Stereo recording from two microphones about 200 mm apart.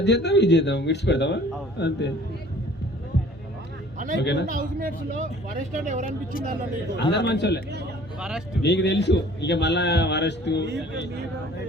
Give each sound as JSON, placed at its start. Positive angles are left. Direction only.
{"t": 0.0, "sound": "a man's voice", "side_deg": 60}
{"t": 4.2, "sound": "a man's voice", "side_deg": 60}
{"t": 4.4, "sound": "speech", "side_deg": -40}
{"t": 6.9, "sound": "a man's voice", "side_deg": 60}
{"t": 8.6, "sound": "a man's voice", "side_deg": 60}